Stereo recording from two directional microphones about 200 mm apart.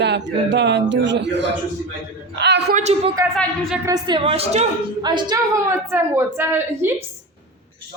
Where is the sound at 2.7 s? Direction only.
30° right (ahead or behind).